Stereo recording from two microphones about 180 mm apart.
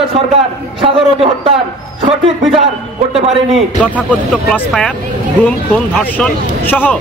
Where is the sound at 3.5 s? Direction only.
5° left (ahead or behind).